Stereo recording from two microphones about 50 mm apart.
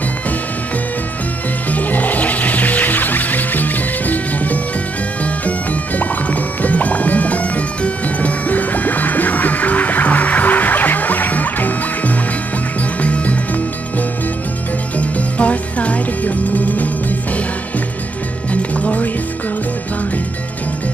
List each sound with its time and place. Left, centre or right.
1.7 s music: left
15.0 s music: left
18.5 s music: left